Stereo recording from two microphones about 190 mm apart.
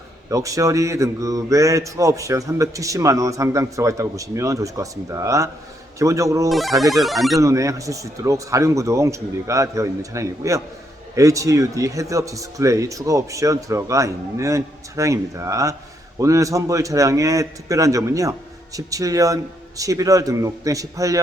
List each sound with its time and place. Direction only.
0.3 s speech: 15° right (ahead or behind)
6.5 s speech: centre (ahead or behind)
7.3 s speech: 15° right (ahead or behind)